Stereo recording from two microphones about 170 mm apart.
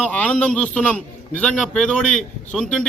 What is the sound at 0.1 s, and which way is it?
A man's voice, 10° left (ahead or behind).